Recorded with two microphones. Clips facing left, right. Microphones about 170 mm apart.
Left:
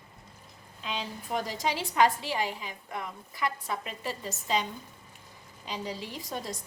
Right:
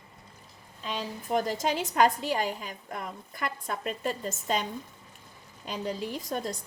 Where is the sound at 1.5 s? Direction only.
50° right (ahead or behind).